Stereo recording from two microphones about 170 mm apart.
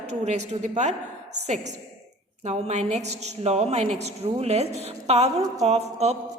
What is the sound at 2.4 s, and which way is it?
A woman's voice, 45° right (ahead or behind).